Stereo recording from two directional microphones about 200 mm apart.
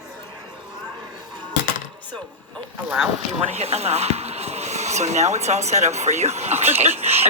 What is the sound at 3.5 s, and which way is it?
Speech, 30° right (ahead or behind).